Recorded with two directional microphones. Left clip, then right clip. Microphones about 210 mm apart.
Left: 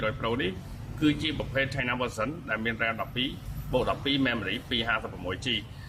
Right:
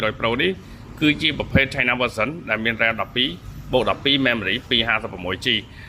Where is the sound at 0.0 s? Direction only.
25° right (ahead or behind).